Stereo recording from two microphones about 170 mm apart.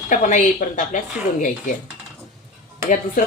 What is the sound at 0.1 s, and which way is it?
A woman's voice, 50° left (ahead or behind).